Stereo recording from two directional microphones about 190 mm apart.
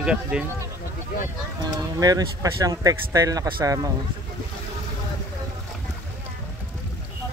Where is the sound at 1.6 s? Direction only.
20° right (ahead or behind).